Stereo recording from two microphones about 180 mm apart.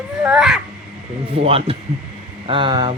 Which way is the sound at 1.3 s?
30° right (ahead or behind).